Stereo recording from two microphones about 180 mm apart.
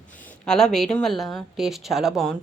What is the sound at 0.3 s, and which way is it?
Speech, 5° left (ahead or behind).